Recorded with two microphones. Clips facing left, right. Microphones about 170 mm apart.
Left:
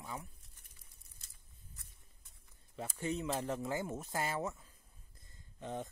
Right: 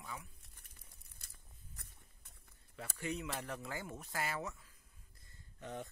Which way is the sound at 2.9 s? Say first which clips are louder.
Left 5 dB; 25° left (ahead or behind).